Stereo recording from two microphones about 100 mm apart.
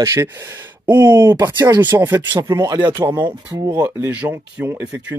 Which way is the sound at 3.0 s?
25° right (ahead or behind).